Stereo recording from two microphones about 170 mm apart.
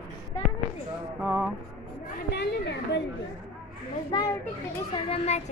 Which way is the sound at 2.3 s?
90° left.